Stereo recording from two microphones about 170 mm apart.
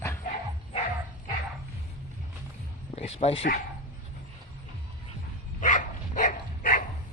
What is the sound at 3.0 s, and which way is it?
Speech, 40° left (ahead or behind).